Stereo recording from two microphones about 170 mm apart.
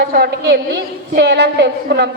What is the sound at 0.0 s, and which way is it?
A woman's voice, 70° right (ahead or behind).